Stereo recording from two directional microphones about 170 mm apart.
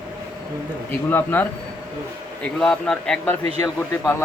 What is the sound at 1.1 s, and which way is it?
A man's voice, 10° left (ahead or behind).